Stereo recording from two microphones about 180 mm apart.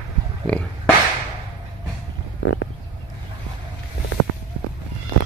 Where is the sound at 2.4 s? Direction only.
90° left.